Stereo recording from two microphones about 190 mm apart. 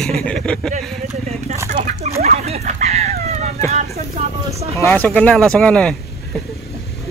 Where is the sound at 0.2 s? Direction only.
5° left (ahead or behind).